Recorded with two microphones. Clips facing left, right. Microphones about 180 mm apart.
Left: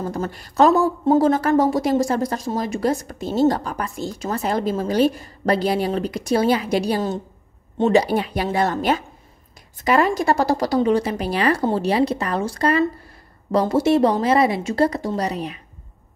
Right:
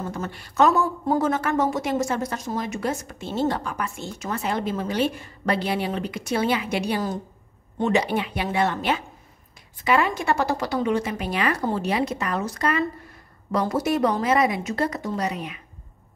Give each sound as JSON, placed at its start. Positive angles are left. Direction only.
{"t": 0.0, "sound": "a woman's voice", "side_deg": 35}
{"t": 8.0, "sound": "a woman's voice", "side_deg": 40}
{"t": 9.8, "sound": "a woman's voice", "side_deg": 40}